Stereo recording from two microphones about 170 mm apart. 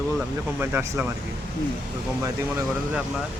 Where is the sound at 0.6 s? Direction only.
15° right (ahead or behind).